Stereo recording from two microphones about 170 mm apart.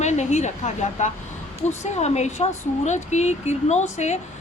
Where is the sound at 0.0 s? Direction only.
40° left (ahead or behind).